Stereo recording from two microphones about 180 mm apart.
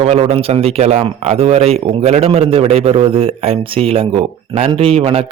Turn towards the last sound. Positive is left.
turn(degrees=-35)  # may be behind; listen again after turning